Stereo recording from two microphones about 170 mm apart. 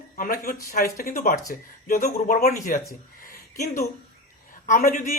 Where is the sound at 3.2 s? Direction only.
55° left (ahead or behind).